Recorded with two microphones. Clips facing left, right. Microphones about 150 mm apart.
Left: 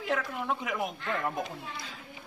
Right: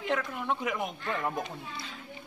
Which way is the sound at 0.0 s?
Centre (ahead or behind).